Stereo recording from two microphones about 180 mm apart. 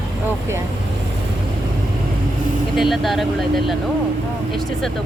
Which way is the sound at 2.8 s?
Centre (ahead or behind).